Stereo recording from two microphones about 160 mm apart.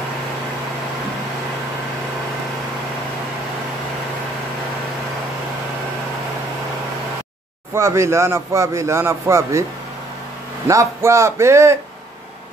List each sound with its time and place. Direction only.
7.7 s a man's voice: 15° right (ahead or behind)
10.7 s a man's voice: 20° right (ahead or behind)